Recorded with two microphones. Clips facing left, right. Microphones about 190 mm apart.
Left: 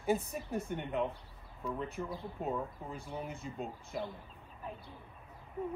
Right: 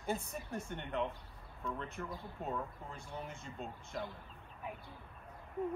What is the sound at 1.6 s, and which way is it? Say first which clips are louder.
Speech: left 4 dB; 5° left (ahead or behind).